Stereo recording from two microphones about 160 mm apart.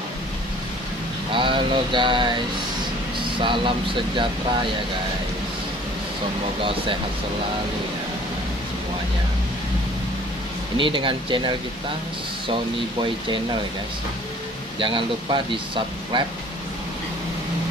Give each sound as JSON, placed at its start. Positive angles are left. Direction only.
{"t": 1.3, "sound": "a sound", "side_deg": -30}
{"t": 3.3, "sound": "speech", "side_deg": -30}
{"t": 10.8, "sound": "speech", "side_deg": -30}
{"t": 14.8, "sound": "speech", "side_deg": -30}